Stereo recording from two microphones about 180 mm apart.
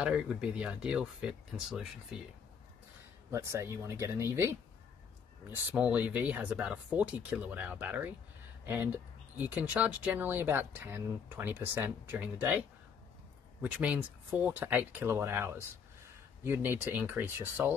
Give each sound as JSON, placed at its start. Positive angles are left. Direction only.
{"t": 0.0, "sound": "speech", "side_deg": -5}
{"t": 3.3, "sound": "speech", "side_deg": -15}